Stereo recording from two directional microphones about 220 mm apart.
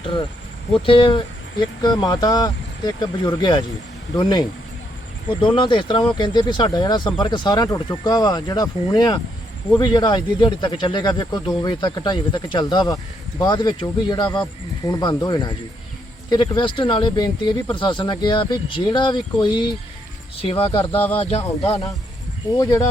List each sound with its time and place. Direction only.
0.7 s speech: 25° left (ahead or behind)